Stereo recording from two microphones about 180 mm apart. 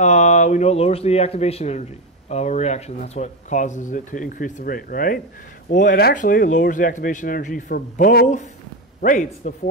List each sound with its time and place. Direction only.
0.0 s speech: 40° left (ahead or behind)
5.8 s a man's voice: 65° left (ahead or behind); by 9.5 s 45° left (ahead or behind)